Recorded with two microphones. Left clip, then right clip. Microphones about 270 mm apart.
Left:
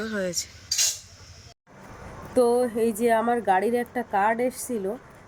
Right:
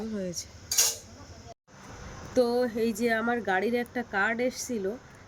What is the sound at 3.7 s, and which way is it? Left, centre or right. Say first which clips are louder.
Speech: left 4 dB; centre.